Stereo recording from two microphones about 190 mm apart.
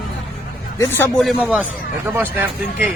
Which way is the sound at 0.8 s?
10° left (ahead or behind).